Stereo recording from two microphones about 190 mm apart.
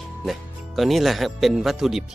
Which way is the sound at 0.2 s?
Centre (ahead or behind).